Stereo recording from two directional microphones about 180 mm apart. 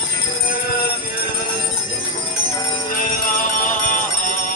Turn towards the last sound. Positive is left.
turn(degrees=45)  # may be behind; listen again after turning